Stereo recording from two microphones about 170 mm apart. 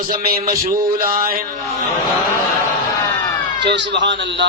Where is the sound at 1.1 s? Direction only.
60° right (ahead or behind).